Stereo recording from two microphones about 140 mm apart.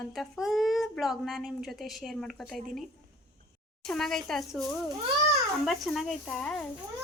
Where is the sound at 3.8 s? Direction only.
5° left (ahead or behind).